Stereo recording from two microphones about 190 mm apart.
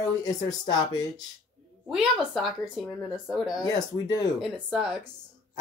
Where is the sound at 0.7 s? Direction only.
20° left (ahead or behind).